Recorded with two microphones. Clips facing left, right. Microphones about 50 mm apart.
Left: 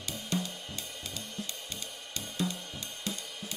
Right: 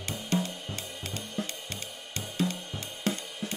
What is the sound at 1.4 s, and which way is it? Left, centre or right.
Music, right.